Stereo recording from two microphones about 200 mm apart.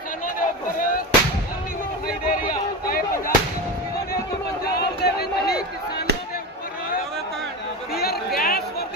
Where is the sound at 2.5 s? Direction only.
45° left (ahead or behind).